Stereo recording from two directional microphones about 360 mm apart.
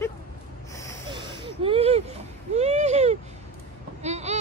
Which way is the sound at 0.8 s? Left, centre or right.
Centre.